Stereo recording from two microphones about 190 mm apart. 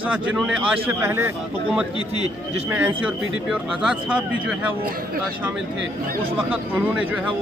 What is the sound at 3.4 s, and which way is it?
Speech, 5° right (ahead or behind).